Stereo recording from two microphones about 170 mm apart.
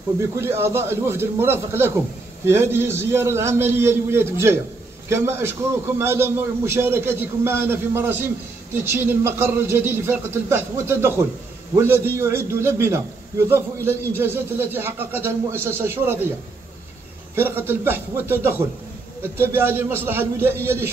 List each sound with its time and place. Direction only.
0.4 s a man's voice: 15° right (ahead or behind)
17.4 s a man's voice: 15° right (ahead or behind)